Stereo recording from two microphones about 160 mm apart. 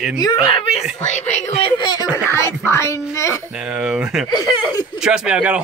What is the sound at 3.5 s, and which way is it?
Speech, 5° right (ahead or behind).